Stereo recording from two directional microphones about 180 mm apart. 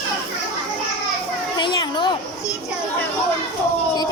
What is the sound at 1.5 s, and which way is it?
Children playing, 25° left (ahead or behind).